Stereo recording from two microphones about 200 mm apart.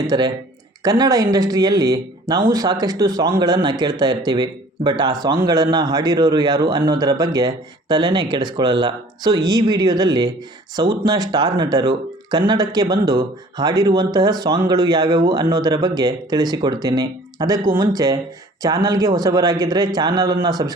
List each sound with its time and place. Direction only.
0.1 s a man's voice: 20° right (ahead or behind)